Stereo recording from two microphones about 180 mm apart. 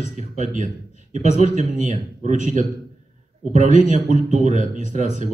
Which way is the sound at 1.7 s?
45° right (ahead or behind).